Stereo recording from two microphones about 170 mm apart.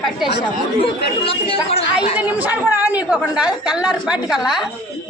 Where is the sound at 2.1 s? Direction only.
10° right (ahead or behind).